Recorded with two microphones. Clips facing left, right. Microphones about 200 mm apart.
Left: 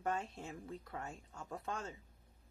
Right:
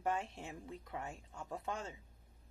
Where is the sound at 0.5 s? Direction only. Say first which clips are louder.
Even; 20° right (ahead or behind).